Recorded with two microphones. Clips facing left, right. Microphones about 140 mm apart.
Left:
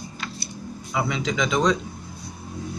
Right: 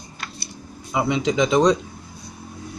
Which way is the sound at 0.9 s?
20° right (ahead or behind).